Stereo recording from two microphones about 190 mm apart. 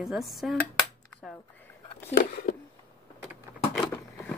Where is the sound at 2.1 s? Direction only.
50° left (ahead or behind).